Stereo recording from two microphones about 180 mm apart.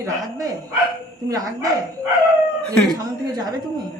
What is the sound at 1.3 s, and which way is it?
Speech, 20° right (ahead or behind).